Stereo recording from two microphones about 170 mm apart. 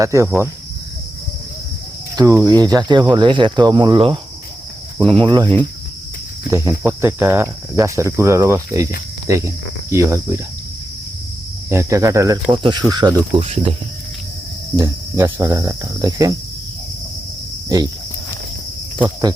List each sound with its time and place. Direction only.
0.0 s speech: 20° right (ahead or behind)
2.1 s speech: 20° right (ahead or behind)
11.7 s speech: 15° right (ahead or behind); by 13.7 s 35° right (ahead or behind)
14.8 s speech: 20° right (ahead or behind)